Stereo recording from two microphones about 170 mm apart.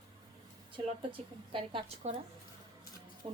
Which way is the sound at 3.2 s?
30° right (ahead or behind).